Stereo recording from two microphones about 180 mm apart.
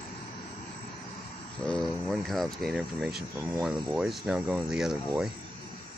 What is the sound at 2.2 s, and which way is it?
Speech, centre (ahead or behind).